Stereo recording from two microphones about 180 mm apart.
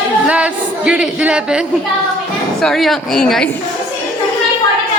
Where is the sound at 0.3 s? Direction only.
5° right (ahead or behind).